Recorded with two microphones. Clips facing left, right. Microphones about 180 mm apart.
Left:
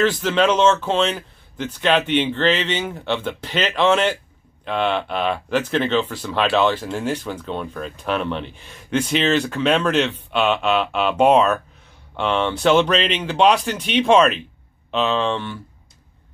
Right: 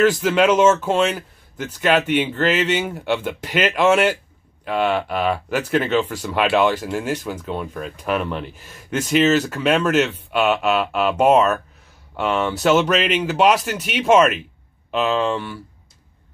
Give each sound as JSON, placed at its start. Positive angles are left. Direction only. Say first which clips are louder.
{"t": 0.0, "sound": "speech", "louder": "right 2 dB", "side_deg": -10}